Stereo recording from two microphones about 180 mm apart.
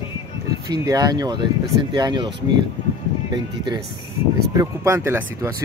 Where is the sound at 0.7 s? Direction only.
20° right (ahead or behind).